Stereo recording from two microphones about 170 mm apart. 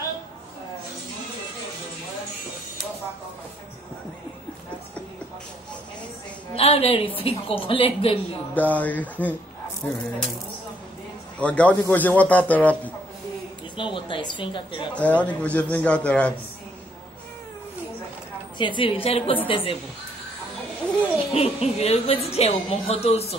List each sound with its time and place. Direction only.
6.5 s a woman's voice: 35° left (ahead or behind)
8.5 s a man's voice: 10° left (ahead or behind)
11.3 s a man's voice: 10° left (ahead or behind)
13.7 s a woman's voice: 30° left (ahead or behind)
15.0 s a man's voice: 10° left (ahead or behind)
18.6 s a woman's voice: 30° left (ahead or behind)
21.3 s a woman's voice: 35° left (ahead or behind)